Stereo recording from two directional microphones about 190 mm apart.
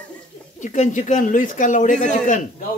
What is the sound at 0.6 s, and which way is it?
A man's voice, 40° left (ahead or behind).